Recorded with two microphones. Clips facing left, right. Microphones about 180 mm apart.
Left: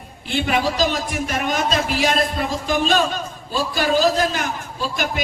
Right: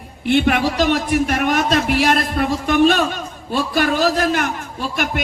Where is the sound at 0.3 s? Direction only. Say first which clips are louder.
Right 5 dB; 60° right (ahead or behind).